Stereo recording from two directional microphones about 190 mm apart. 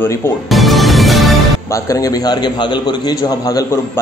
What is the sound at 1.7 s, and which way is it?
Speech, 20° left (ahead or behind).